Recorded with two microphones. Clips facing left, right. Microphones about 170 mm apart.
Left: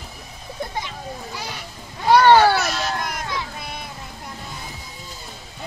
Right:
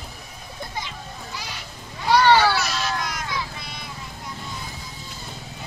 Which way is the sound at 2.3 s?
50° left (ahead or behind).